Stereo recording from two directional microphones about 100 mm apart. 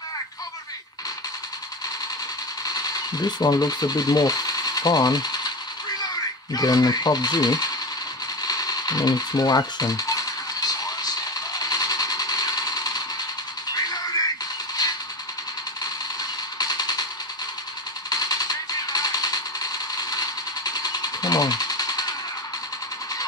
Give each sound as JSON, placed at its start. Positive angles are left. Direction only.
{"t": 2.6, "sound": "speech", "side_deg": 40}
{"t": 6.5, "sound": "speech", "side_deg": 40}
{"t": 8.4, "sound": "a sound", "side_deg": 40}
{"t": 13.7, "sound": "music", "side_deg": 40}
{"t": 14.8, "sound": "a sound", "side_deg": 40}
{"t": 18.1, "sound": "machine gun", "side_deg": 40}